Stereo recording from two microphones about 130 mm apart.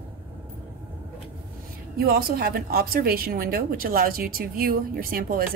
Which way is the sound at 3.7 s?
90° right.